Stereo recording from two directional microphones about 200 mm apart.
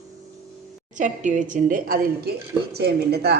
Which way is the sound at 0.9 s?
40° right (ahead or behind).